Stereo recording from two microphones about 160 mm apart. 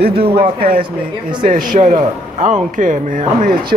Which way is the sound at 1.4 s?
60° right (ahead or behind).